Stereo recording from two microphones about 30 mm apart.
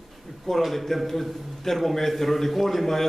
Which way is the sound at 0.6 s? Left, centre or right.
Centre.